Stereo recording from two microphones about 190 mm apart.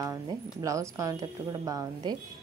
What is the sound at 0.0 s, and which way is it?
A woman's voice, 15° right (ahead or behind).